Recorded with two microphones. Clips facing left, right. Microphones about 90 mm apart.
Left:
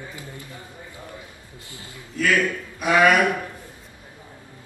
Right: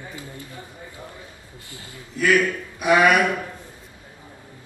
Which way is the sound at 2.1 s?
20° right (ahead or behind).